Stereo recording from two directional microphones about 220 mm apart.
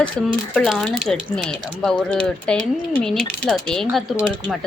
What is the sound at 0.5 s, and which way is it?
A woman's voice, centre (ahead or behind).